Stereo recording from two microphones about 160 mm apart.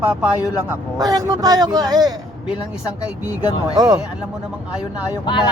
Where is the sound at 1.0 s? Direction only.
25° right (ahead or behind).